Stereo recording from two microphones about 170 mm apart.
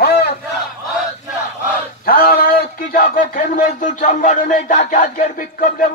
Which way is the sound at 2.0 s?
60° left (ahead or behind).